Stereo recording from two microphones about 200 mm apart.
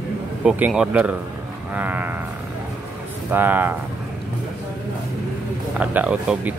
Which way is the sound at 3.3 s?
10° right (ahead or behind).